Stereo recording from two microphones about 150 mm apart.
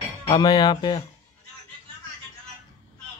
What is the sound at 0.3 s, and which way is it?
Speech, 25° left (ahead or behind).